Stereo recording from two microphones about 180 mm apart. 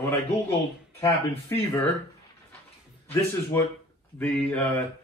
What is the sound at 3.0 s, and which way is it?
Speech, 15° left (ahead or behind).